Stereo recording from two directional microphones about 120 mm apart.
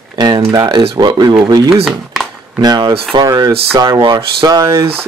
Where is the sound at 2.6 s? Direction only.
35° right (ahead or behind).